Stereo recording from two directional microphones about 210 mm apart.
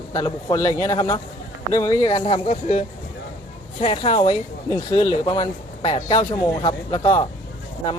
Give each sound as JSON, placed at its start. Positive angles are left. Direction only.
{"t": 0.1, "sound": "speech", "side_deg": 20}